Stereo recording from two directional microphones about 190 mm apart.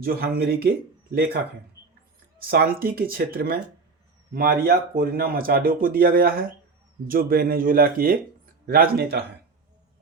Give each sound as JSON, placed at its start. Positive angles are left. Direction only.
{"t": 0.0, "sound": "speech", "side_deg": -50}
{"t": 2.5, "sound": "speech", "side_deg": -55}